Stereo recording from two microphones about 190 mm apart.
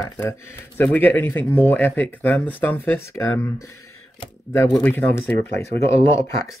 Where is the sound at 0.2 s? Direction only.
10° left (ahead or behind).